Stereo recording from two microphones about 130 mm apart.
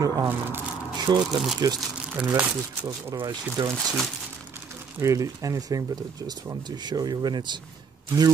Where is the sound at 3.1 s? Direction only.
30° right (ahead or behind).